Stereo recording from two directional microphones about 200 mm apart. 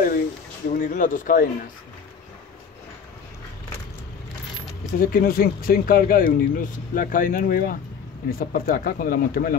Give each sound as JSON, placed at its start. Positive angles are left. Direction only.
{"t": 0.7, "sound": "speech", "side_deg": 40}
{"t": 5.0, "sound": "speech", "side_deg": 45}